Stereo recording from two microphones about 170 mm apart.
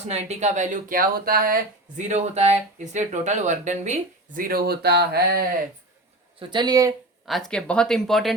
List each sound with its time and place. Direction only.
0.1 s speech: 40° right (ahead or behind)
4.4 s speech: 65° right (ahead or behind)
6.4 s speech: 25° right (ahead or behind)
7.3 s speech: centre (ahead or behind)